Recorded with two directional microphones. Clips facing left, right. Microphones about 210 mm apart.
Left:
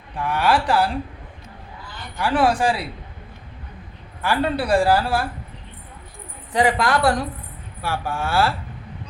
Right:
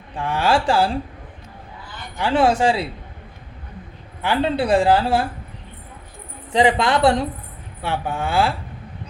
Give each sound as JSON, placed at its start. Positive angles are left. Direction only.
{"t": 0.2, "sound": "speech", "side_deg": -25}
{"t": 2.1, "sound": "speech", "side_deg": -25}
{"t": 4.2, "sound": "speech", "side_deg": -20}
{"t": 6.5, "sound": "speech", "side_deg": -25}